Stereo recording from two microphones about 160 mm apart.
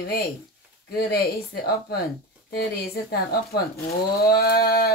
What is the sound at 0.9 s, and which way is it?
Speech, 75° left (ahead or behind).